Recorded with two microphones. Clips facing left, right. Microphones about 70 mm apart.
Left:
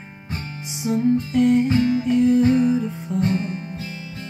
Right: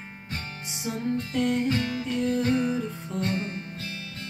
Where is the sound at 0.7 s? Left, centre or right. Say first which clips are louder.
Left 10 dB; centre.